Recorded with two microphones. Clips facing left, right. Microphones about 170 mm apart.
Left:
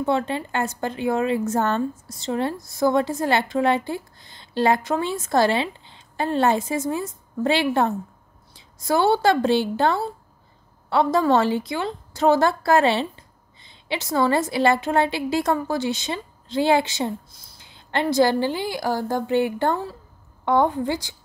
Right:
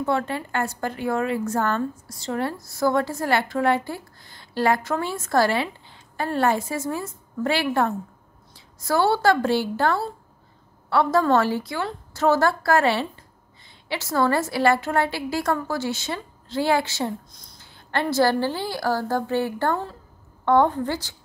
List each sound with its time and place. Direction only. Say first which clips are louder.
0.0 s a woman's voice: left 2 dB; 20° left (ahead or behind)
17.3 s speech: right 1 dB; 5° left (ahead or behind)
17.6 s a woman's voice: left 1 dB; 20° left (ahead or behind)